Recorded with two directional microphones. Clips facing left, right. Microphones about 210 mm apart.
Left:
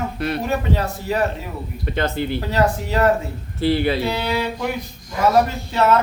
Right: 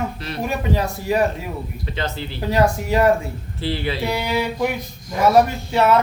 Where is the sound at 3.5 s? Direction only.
40° left (ahead or behind).